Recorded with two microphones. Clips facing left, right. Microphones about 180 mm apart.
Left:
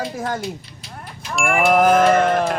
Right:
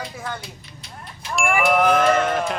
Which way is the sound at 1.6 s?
45° left (ahead or behind).